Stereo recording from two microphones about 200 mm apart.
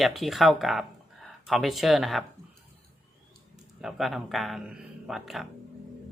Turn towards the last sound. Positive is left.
turn(degrees=0)  # may be behind; listen again after turning